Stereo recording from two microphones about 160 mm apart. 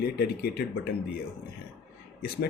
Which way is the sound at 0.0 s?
70° left (ahead or behind).